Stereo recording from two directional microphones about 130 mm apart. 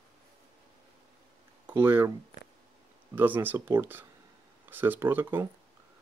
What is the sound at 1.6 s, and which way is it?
Speech, 15° right (ahead or behind).